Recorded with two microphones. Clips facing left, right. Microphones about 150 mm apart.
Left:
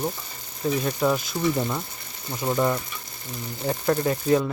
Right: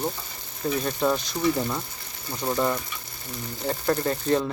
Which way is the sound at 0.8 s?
5° left (ahead or behind).